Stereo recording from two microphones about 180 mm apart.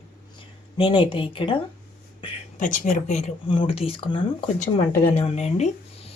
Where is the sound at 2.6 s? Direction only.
45° left (ahead or behind).